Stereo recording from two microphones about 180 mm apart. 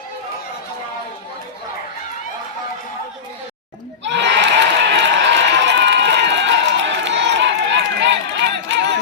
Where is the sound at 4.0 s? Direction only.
85° right.